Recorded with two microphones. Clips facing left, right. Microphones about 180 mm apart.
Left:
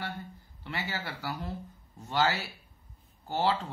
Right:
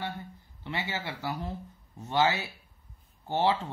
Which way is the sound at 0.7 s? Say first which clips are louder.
Right 2 dB; 20° right (ahead or behind).